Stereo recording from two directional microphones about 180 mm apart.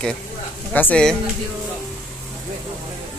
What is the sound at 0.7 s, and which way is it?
Speech, 10° left (ahead or behind).